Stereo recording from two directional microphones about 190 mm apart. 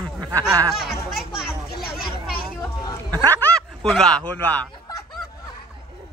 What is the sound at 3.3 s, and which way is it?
Speech, 5° left (ahead or behind).